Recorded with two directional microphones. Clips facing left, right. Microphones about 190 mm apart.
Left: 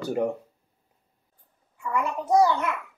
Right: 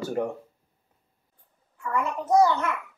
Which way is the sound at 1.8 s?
10° left (ahead or behind).